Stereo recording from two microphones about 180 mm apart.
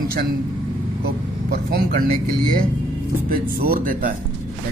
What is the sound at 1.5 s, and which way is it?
Speech, 60° right (ahead or behind).